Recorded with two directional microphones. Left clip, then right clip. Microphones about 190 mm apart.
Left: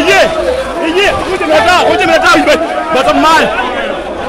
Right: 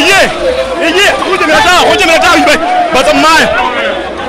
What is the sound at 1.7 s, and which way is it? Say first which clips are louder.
Speech: right 2 dB; 30° right (ahead or behind).